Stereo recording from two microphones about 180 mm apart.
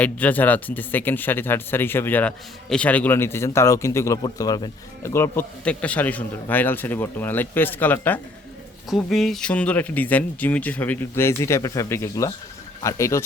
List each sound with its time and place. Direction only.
0.0 s speech: 10° left (ahead or behind)